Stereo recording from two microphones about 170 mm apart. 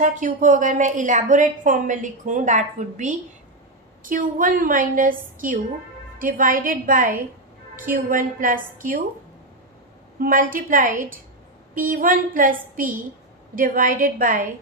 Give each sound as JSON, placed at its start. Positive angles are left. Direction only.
{"t": 0.0, "sound": "a woman's voice", "side_deg": -50}
{"t": 10.2, "sound": "a woman's voice", "side_deg": -55}